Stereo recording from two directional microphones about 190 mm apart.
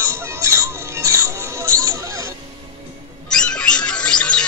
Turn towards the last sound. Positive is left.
turn(degrees=5)  # may be behind; listen again after turning